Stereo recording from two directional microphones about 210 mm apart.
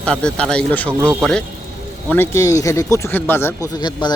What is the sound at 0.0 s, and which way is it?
Speech, 5° left (ahead or behind).